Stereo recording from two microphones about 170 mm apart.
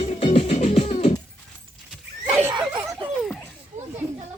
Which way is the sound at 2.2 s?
15° right (ahead or behind).